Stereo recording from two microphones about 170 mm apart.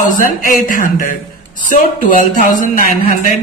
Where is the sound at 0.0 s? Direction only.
55° left (ahead or behind).